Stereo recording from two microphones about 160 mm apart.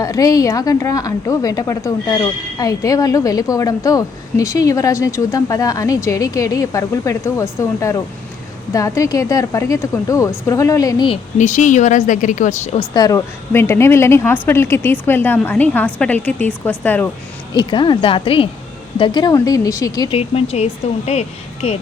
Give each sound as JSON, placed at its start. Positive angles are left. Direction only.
{"t": 0.0, "sound": "a woman's voice", "side_deg": 20}
{"t": 11.3, "sound": "a woman's voice", "side_deg": 50}
{"t": 12.9, "sound": "a woman's voice", "side_deg": 25}
{"t": 17.5, "sound": "a woman's voice", "side_deg": 30}
{"t": 20.1, "sound": "speech", "side_deg": 40}